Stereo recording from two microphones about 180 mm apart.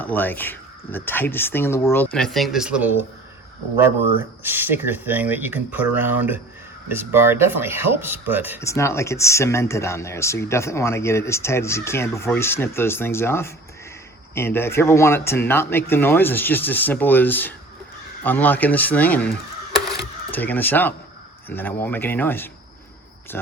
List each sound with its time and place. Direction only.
0.0 s speech: 10° left (ahead or behind); by 3.1 s 5° right (ahead or behind)
4.2 s speech: 10° right (ahead or behind)
8.5 s speech: 15° left (ahead or behind)
20.0 s a sound: 10° left (ahead or behind)
21.5 s speech: 10° left (ahead or behind)
23.3 s cricket: 10° left (ahead or behind)